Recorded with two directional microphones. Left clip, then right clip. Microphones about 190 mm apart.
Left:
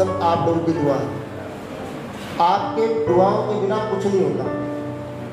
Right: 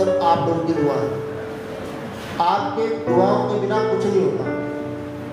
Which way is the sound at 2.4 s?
45° left (ahead or behind).